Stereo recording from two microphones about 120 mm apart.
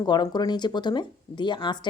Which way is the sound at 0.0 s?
35° left (ahead or behind).